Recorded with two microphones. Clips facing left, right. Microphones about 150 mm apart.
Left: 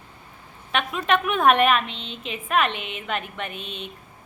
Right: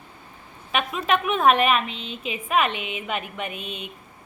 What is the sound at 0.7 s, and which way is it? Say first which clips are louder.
A woman's voice: even; 5° right (ahead or behind).